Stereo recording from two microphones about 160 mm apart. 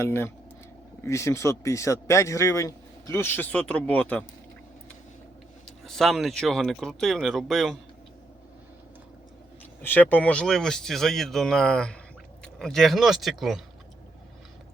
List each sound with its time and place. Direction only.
0.0 s speech: 15° left (ahead or behind)
5.8 s speech: centre (ahead or behind)
9.8 s speech: 10° left (ahead or behind)